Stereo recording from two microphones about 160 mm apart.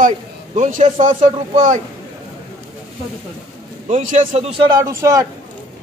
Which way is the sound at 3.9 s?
45° right (ahead or behind).